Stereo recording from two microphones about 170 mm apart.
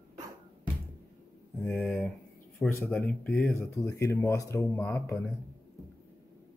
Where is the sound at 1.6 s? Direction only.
10° left (ahead or behind).